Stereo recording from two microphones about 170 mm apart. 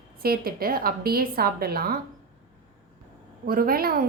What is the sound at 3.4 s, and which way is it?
Speech, 60° right (ahead or behind).